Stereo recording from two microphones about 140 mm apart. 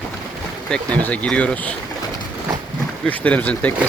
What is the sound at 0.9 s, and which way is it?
Speech, 10° left (ahead or behind).